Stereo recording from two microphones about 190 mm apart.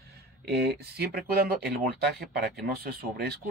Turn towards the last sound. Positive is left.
turn(degrees=-55)  # may be behind; listen again after turning